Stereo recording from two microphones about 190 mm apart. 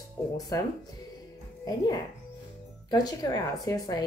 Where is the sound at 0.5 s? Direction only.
20° left (ahead or behind).